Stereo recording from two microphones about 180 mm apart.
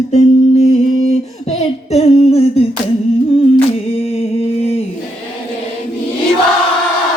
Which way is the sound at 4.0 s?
35° left (ahead or behind).